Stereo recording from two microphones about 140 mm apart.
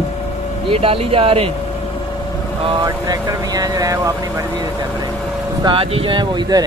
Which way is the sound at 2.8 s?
25° right (ahead or behind).